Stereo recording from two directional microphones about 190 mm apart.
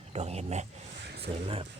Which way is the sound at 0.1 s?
35° right (ahead or behind).